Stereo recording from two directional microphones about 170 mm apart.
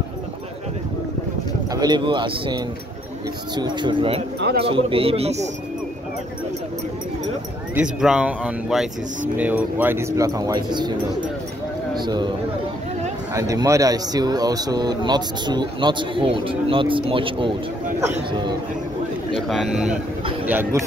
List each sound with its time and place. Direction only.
1.7 s speech: 25° right (ahead or behind)
4.4 s speech: 70° right (ahead or behind)
4.6 s a man's voice: 30° right (ahead or behind)
7.7 s speech: 5° right (ahead or behind); by 10.9 s 25° right (ahead or behind)
12.0 s speech: 25° right (ahead or behind)
13.3 s a man's voice: 20° right (ahead or behind)
19.3 s speech: centre (ahead or behind)